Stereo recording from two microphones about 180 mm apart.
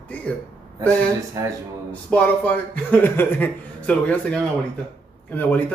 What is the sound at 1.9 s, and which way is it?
Speech, 10° left (ahead or behind).